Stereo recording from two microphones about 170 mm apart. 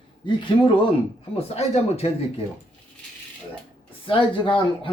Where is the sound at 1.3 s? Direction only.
40° left (ahead or behind).